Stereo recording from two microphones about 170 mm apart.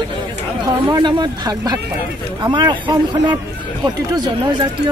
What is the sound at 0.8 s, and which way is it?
A woman's voice, 25° right (ahead or behind).